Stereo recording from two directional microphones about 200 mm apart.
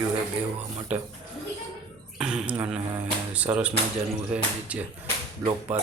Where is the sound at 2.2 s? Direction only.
5° right (ahead or behind).